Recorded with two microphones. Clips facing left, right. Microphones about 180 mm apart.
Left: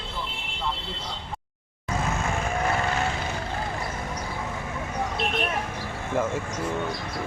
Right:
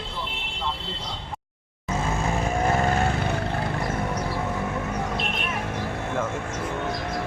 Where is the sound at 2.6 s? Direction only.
40° right (ahead or behind); by 4.2 s 60° right (ahead or behind).